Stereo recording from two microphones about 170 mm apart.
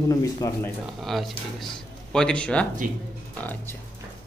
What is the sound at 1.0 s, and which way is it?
Speech, centre (ahead or behind).